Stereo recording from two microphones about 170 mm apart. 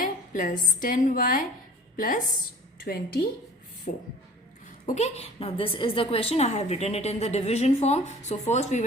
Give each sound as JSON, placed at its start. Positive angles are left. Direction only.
{"t": 0.0, "sound": "a sound", "side_deg": 50}
{"t": 0.8, "sound": "a woman's voice", "side_deg": 50}
{"t": 3.9, "sound": "a woman's voice", "side_deg": 50}